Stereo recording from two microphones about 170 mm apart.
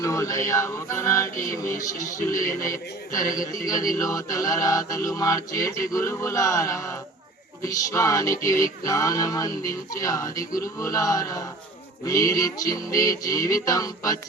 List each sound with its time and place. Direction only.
0.0 s a man's voice: 20° left (ahead or behind)